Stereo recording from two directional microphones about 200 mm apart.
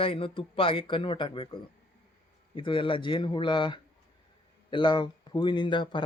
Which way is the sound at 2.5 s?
25° left (ahead or behind).